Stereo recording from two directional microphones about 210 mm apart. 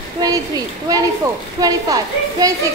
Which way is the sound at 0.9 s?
15° right (ahead or behind).